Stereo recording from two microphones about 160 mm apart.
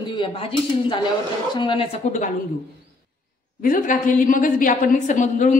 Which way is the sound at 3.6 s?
60° left (ahead or behind).